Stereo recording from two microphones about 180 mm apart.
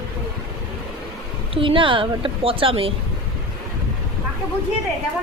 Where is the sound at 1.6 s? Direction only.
30° right (ahead or behind).